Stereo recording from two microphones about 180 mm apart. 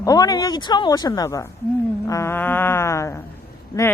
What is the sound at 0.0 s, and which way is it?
Speech, 20° left (ahead or behind).